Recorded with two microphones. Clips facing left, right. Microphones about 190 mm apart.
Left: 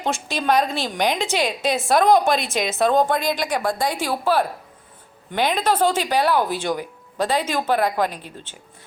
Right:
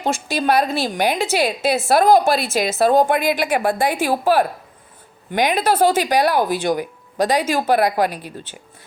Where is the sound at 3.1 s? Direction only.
60° right (ahead or behind).